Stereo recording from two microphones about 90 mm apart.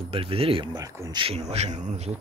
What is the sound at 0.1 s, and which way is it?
Speech, 90° right.